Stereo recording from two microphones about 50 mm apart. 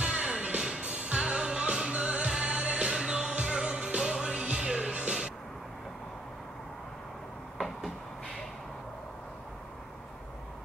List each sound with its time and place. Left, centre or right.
0.0 s music: right
0.6 s music: centre
0.8 s music: right
2.9 s music: centre